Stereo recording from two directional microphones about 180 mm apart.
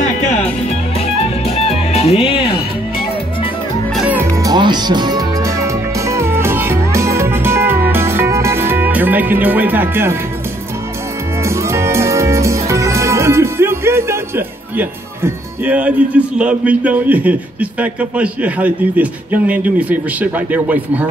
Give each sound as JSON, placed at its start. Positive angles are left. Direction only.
{"t": 1.5, "sound": "music", "side_deg": 35}
{"t": 3.9, "sound": "music", "side_deg": -5}
{"t": 11.4, "sound": "music", "side_deg": -15}